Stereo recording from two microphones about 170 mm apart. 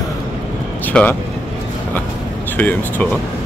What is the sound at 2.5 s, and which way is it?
Speech, 10° left (ahead or behind).